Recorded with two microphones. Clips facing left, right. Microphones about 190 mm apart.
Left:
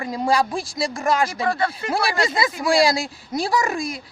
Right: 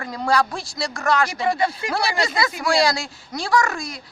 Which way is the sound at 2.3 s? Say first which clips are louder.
Left 1 dB; 25° left (ahead or behind).